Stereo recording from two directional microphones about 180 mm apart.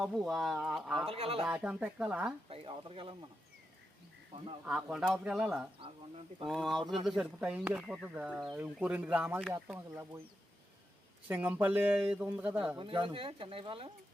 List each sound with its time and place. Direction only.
0.0 s speech: centre (ahead or behind)
1.0 s speech: 30° right (ahead or behind)
1.5 s speech: 5° right (ahead or behind)
2.5 s speech: 30° right (ahead or behind)
4.6 s speech: 5° right (ahead or behind)
5.8 s speech: 30° right (ahead or behind)
6.5 s speech: centre (ahead or behind)
11.3 s speech: 10° right (ahead or behind)
12.7 s speech: 30° right (ahead or behind)